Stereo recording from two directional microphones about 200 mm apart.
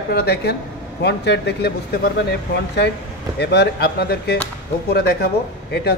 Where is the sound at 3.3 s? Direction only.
55° left (ahead or behind).